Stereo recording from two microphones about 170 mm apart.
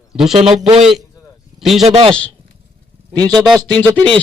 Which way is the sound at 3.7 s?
25° right (ahead or behind).